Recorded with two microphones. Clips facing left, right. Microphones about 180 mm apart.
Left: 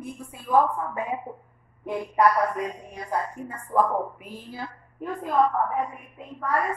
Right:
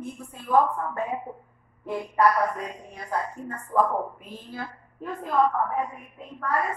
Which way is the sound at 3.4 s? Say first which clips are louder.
Even; 10° left (ahead or behind).